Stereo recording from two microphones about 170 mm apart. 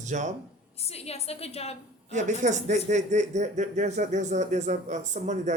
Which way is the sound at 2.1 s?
45° right (ahead or behind).